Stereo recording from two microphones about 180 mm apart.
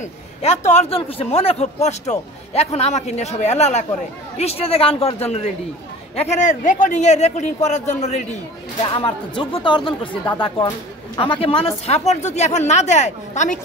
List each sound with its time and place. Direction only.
0.0 s a man's voice: 40° left (ahead or behind)
8.8 s a man's voice: 25° left (ahead or behind)